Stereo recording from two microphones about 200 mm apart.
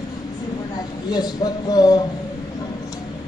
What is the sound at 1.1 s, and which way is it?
Speech, 20° left (ahead or behind).